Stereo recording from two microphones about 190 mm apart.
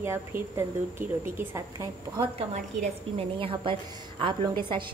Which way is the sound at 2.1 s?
35° right (ahead or behind).